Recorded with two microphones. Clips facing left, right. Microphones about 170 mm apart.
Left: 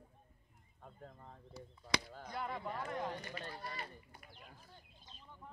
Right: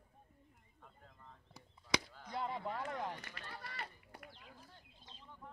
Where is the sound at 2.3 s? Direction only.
25° right (ahead or behind).